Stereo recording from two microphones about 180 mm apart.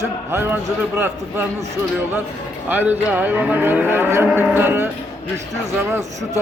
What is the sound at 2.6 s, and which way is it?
Speech, 10° right (ahead or behind).